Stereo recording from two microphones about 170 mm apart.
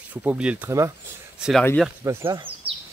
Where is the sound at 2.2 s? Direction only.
30° right (ahead or behind).